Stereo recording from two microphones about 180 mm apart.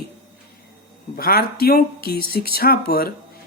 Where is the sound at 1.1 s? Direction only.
55° left (ahead or behind).